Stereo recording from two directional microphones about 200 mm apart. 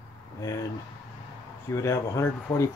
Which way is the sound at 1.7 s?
15° left (ahead or behind).